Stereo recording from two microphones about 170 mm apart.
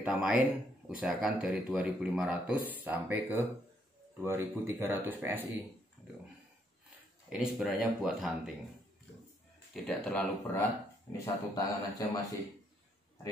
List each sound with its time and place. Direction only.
0.0 s speech: 5° right (ahead or behind)
7.2 s speech: 5° right (ahead or behind)
9.8 s speech: 5° left (ahead or behind)
11.1 s a man's voice: 20° left (ahead or behind)